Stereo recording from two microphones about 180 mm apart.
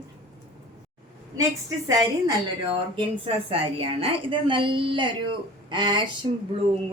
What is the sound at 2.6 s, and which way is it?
A woman's voice, 30° right (ahead or behind).